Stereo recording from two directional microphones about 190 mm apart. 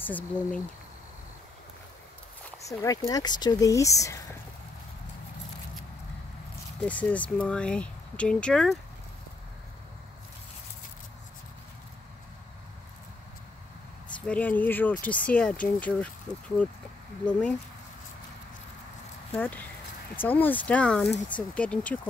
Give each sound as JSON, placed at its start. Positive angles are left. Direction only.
{"t": 0.0, "sound": "speech", "side_deg": 10}
{"t": 2.6, "sound": "speech", "side_deg": 15}
{"t": 6.8, "sound": "speech", "side_deg": 5}
{"t": 14.2, "sound": "speech", "side_deg": 5}
{"t": 19.3, "sound": "speech", "side_deg": 10}